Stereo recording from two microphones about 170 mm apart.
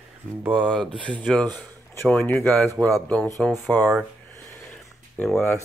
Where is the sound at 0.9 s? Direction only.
30° right (ahead or behind).